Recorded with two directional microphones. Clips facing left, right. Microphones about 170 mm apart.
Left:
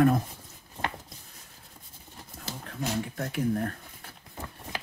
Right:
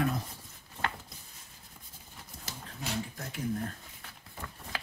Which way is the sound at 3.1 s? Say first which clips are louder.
Left 6 dB; 60° left (ahead or behind).